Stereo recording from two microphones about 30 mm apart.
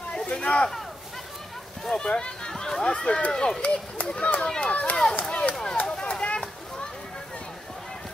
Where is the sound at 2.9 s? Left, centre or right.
Left.